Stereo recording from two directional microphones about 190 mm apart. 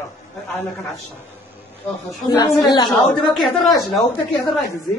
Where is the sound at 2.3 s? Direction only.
20° left (ahead or behind).